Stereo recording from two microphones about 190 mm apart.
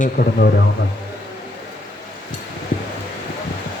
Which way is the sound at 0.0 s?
50° left (ahead or behind).